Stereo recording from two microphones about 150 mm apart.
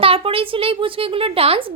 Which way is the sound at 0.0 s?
40° right (ahead or behind).